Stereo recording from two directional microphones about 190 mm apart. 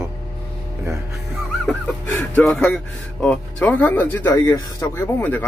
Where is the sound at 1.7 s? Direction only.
5° left (ahead or behind).